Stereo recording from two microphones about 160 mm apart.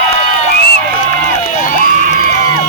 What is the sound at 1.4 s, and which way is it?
Music, 55° left (ahead or behind).